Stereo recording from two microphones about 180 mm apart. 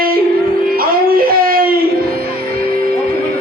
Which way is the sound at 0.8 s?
55° right (ahead or behind).